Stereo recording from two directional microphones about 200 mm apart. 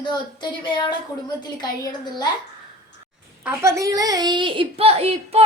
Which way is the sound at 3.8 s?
15° right (ahead or behind).